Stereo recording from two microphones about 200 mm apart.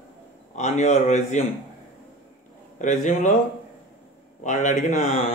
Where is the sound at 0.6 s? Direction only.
35° left (ahead or behind).